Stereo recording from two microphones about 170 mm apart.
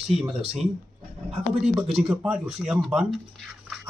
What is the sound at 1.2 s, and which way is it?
Speech, 5° right (ahead or behind).